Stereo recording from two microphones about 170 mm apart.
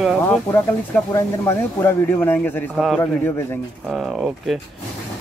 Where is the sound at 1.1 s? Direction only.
15° left (ahead or behind).